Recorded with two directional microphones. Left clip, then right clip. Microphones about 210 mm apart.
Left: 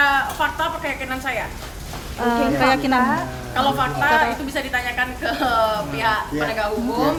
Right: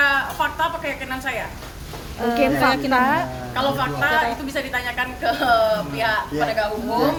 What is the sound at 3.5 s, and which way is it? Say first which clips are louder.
A woman's voice: left 3 dB; 5° right (ahead or behind).